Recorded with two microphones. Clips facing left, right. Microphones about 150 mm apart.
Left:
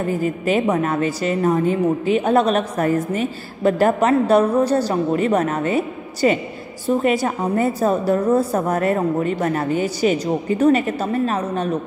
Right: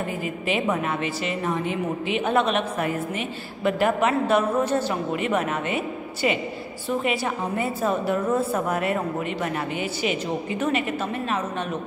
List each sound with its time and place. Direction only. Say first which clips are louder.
0.1 s a woman's voice: left 7 dB; 40° left (ahead or behind)